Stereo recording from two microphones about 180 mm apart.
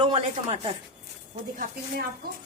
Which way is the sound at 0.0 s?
30° right (ahead or behind).